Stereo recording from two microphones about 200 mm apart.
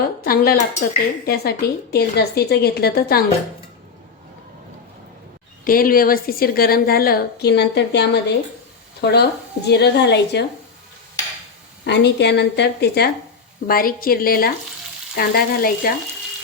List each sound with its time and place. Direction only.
0.3 s speech: 45° left (ahead or behind)
5.6 s a woman's voice: 45° left (ahead or behind)
11.9 s a woman's voice: 60° left (ahead or behind)